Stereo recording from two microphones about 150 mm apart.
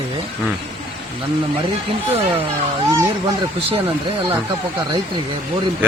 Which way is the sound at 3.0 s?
25° right (ahead or behind).